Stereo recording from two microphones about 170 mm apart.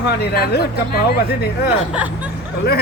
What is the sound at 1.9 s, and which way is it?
Speech, 10° right (ahead or behind).